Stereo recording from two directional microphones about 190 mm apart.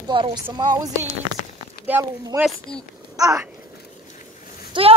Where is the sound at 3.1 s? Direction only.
20° right (ahead or behind).